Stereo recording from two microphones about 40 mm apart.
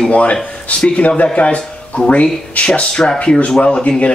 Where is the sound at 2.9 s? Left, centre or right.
Centre.